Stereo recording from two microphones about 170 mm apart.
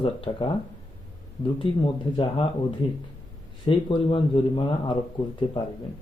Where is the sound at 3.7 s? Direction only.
30° left (ahead or behind).